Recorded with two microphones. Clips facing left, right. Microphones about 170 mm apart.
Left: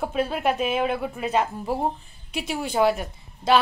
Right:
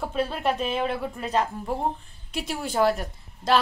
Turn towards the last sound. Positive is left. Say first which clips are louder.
# left 2 dB
turn(degrees=0)  # may be behind; listen again after turning